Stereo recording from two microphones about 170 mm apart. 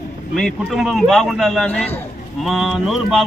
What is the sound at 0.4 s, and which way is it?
Speech, centre (ahead or behind).